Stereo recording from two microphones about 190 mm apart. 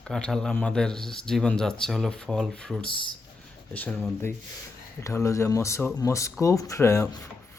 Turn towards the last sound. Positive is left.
turn(degrees=15)  # may be behind; listen again after turning